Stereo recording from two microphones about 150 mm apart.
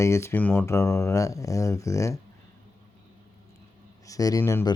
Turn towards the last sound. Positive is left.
turn(degrees=15)  # may be behind; listen again after turning